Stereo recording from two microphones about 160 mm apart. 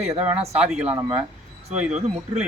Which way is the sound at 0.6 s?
5° right (ahead or behind).